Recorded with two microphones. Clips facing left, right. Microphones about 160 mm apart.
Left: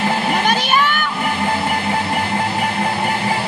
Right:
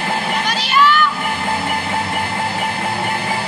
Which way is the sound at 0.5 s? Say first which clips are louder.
Right 1 dB; 55° left (ahead or behind).